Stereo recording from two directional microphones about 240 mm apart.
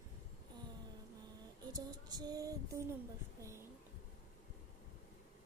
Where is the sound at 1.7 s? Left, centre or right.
Centre.